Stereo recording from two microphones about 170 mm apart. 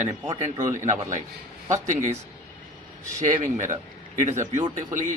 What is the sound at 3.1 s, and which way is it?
Speech, 45° right (ahead or behind).